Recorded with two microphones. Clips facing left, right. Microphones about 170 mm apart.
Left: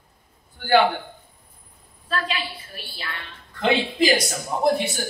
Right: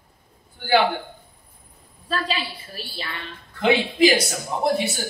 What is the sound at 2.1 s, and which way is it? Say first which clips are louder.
Speech: right 1 dB; 35° right (ahead or behind).